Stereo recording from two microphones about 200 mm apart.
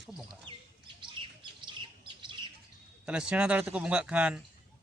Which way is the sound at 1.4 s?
25° right (ahead or behind).